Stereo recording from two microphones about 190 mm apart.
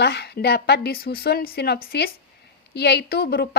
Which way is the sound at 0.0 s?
60° left (ahead or behind).